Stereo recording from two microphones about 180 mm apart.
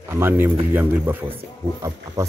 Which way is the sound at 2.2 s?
15° right (ahead or behind).